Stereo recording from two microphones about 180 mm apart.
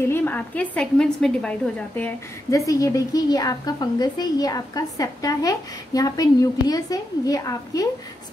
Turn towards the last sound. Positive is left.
turn(degrees=20)  # may be behind; listen again after turning